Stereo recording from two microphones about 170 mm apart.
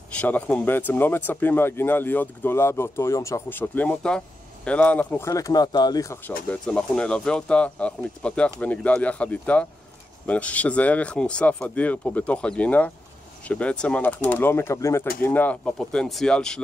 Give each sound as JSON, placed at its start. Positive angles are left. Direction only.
{"t": 0.2, "sound": "speech", "side_deg": 10}
{"t": 6.5, "sound": "speech", "side_deg": 5}